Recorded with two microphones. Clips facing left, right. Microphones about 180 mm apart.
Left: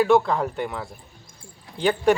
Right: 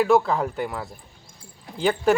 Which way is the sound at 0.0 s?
Centre (ahead or behind).